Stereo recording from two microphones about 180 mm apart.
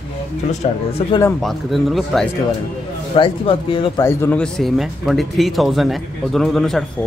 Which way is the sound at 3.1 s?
30° left (ahead or behind).